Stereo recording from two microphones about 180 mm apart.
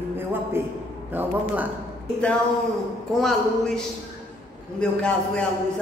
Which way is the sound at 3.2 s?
5° left (ahead or behind).